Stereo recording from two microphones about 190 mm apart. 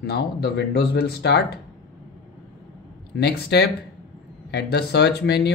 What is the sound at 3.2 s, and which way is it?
Speech, 60° left (ahead or behind).